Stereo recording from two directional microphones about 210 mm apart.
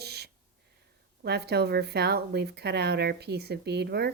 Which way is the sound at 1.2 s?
50° right (ahead or behind).